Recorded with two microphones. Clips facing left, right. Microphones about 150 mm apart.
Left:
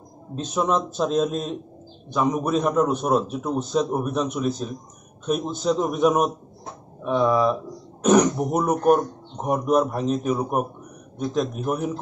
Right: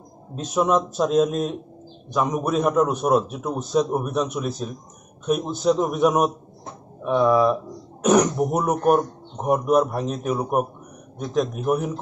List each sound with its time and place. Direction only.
0.4 s a man's voice: 5° right (ahead or behind)